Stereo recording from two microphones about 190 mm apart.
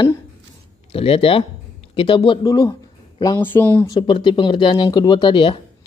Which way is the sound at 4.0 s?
25° left (ahead or behind).